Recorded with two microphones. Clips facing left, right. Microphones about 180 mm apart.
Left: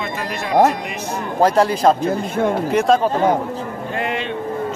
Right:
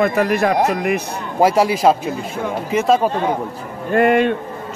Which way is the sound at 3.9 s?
50° right (ahead or behind).